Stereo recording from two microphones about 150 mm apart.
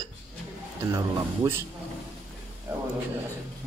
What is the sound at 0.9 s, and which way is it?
Speech, 20° right (ahead or behind).